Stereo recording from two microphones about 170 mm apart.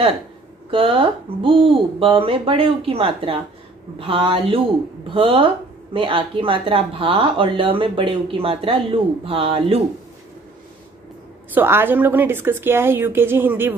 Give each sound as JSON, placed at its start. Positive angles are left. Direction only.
{"t": 0.7, "sound": "speech", "side_deg": -30}
{"t": 11.5, "sound": "a woman's voice", "side_deg": -15}